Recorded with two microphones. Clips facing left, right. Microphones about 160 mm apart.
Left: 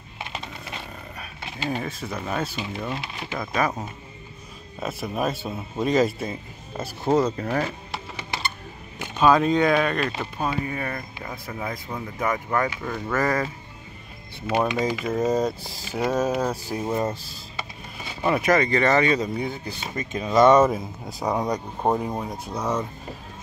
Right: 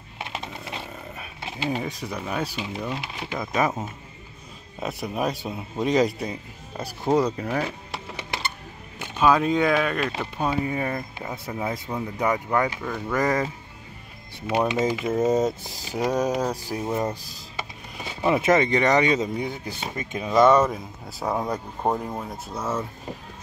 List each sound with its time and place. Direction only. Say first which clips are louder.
1.6 s speech: right 1 dB; 15° right (ahead or behind)
2.8 s speech: even; centre (ahead or behind)
3.3 s speech: right 1 dB; 20° right (ahead or behind)
4.7 s speech: even; 15° right (ahead or behind)
7.3 s speech: left 1 dB; 5° right (ahead or behind)
9.2 s speech: left 1 dB; 5° right (ahead or behind)
10.6 s speech: right 3 dB; 20° right (ahead or behind)
12.6 s speech: even; 5° left (ahead or behind)
13.1 s speech: right 1 dB; 15° right (ahead or behind)
14.9 s speech: right 1 dB; 20° right (ahead or behind)
16.8 s speech: left 1 dB; centre (ahead or behind)
17.1 s speech: left 1 dB; 15° right (ahead or behind)
21.8 s speech: left 2 dB; 10° left (ahead or behind)
22.5 s speech: left 2 dB; 5° right (ahead or behind)